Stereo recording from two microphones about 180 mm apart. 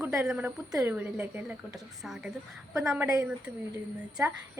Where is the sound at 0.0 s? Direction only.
5° right (ahead or behind).